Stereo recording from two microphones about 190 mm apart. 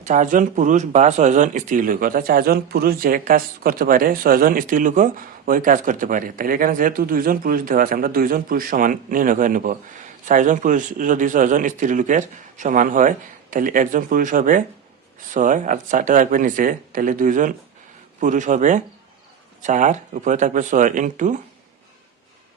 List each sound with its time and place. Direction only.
0.0 s speech: 40° right (ahead or behind)